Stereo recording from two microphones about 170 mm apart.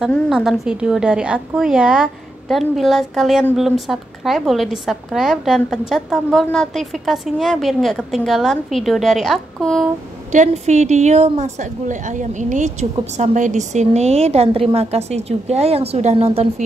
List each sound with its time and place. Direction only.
0.0 s a woman's voice: 5° right (ahead or behind)
10.3 s a woman's voice: 45° right (ahead or behind)